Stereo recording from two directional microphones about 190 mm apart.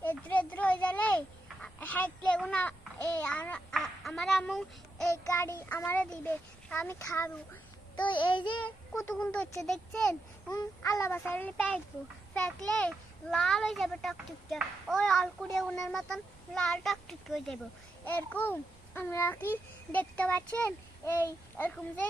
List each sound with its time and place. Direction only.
0.0 s children playing: 10° left (ahead or behind)
1.6 s a sound: 10° left (ahead or behind)
5.1 s a child's voice: 15° left (ahead or behind)
8.0 s child singing: 25° left (ahead or behind)
9.0 s a child's voice: 5° left (ahead or behind)
10.5 s a child's voice: 15° left (ahead or behind)